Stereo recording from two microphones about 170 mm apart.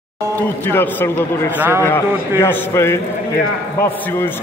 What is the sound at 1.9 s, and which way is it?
A man's voice, 15° left (ahead or behind).